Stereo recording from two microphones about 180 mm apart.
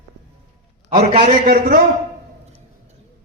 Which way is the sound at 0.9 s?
35° right (ahead or behind).